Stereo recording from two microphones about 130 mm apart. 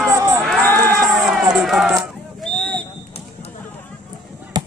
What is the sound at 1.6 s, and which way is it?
Speech, 5° right (ahead or behind).